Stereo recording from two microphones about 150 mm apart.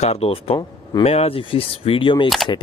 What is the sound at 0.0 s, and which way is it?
Speech, 40° left (ahead or behind).